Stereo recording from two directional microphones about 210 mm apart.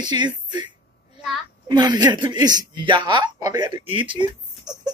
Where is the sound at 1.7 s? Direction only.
20° right (ahead or behind).